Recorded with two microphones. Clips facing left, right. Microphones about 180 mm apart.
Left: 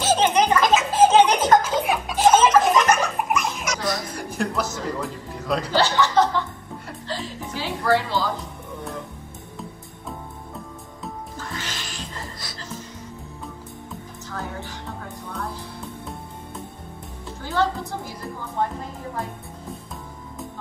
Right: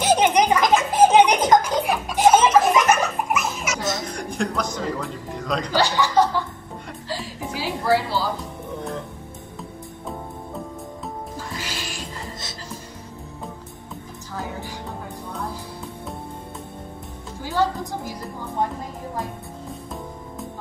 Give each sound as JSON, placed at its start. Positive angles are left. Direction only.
{"t": 0.0, "sound": "a sound", "side_deg": -15}
{"t": 0.9, "sound": "music", "side_deg": -15}
{"t": 2.1, "sound": "a sound", "side_deg": -10}
{"t": 4.2, "sound": "music", "side_deg": 5}
{"t": 5.7, "sound": "chuckle", "side_deg": -15}
{"t": 7.5, "sound": "music", "side_deg": -10}
{"t": 11.3, "sound": "music", "side_deg": -10}
{"t": 17.4, "sound": "music", "side_deg": -10}